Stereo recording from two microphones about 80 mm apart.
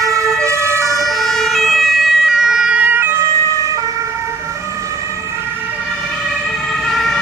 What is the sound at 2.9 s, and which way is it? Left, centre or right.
Emergency vehicle, right.